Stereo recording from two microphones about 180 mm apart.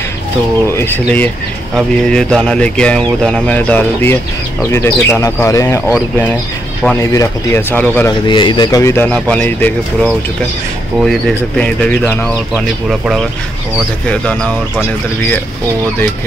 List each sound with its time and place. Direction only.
0.7 s a man's voice: 10° left (ahead or behind)
7.0 s speech: 15° left (ahead or behind)
8.1 s speech: 25° left (ahead or behind); by 9.7 s 5° left (ahead or behind)
11.0 s a man's voice: centre (ahead or behind)
12.5 s a man's voice: 5° right (ahead or behind)